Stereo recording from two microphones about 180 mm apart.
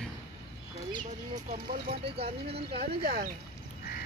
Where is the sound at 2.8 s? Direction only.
55° right (ahead or behind).